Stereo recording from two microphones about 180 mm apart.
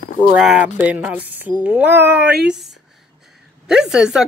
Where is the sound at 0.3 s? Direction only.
5° right (ahead or behind).